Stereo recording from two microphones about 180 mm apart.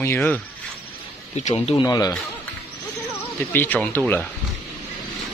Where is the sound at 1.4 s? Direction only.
35° left (ahead or behind).